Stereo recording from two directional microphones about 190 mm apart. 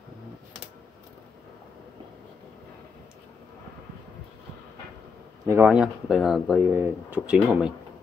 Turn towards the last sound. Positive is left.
turn(degrees=-5)  # may be behind; listen again after turning